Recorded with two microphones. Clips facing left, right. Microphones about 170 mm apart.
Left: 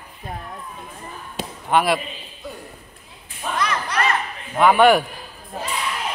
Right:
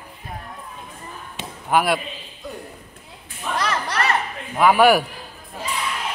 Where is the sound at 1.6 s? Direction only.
Centre (ahead or behind).